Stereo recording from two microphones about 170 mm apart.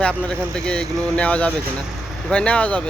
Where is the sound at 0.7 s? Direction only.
5° left (ahead or behind).